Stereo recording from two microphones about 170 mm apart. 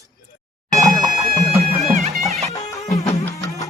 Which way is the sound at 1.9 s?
40° right (ahead or behind).